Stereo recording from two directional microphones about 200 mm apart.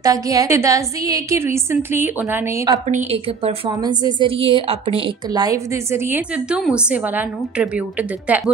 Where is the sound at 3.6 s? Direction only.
20° right (ahead or behind).